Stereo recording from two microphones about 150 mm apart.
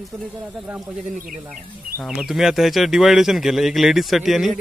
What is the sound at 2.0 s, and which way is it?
Speech, 5° right (ahead or behind).